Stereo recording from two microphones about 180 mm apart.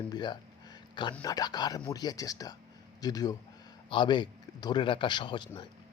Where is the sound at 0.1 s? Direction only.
25° left (ahead or behind).